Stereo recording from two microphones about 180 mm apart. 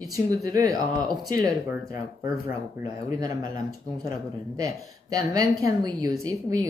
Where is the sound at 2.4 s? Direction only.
20° right (ahead or behind).